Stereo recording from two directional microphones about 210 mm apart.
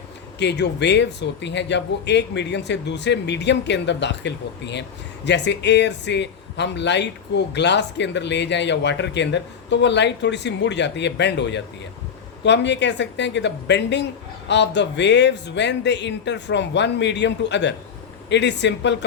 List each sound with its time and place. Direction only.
0.3 s a man's voice: 55° left (ahead or behind)